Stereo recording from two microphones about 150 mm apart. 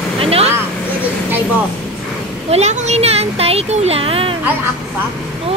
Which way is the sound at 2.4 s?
45° right (ahead or behind).